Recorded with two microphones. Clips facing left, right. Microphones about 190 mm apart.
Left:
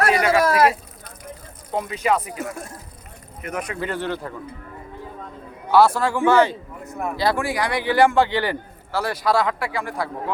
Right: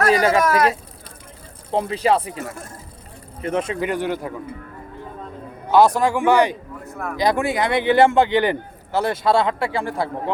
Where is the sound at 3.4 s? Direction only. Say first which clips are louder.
Right 6 dB; 30° right (ahead or behind).